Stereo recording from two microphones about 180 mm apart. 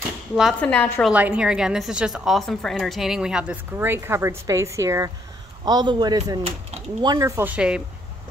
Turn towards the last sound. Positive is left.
turn(degrees=-5)  # may be behind; listen again after turning